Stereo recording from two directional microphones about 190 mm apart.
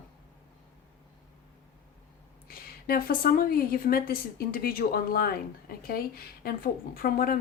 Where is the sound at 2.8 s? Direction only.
50° left (ahead or behind).